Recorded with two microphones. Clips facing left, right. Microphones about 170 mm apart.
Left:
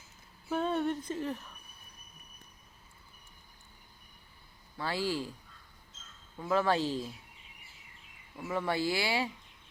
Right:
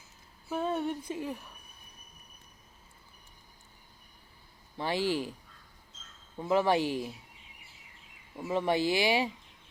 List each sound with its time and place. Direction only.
0.5 s speech: 5° right (ahead or behind)
4.8 s speech: 20° right (ahead or behind)
6.3 s speech: 20° right (ahead or behind)
8.4 s speech: 20° right (ahead or behind)